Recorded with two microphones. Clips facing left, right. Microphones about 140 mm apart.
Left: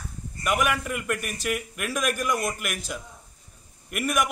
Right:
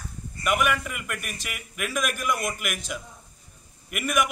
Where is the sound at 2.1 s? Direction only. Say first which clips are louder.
Left 1 dB; 35° left (ahead or behind).